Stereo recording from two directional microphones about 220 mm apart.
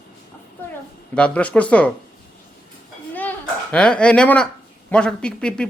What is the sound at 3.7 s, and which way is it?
Speech, 5° left (ahead or behind).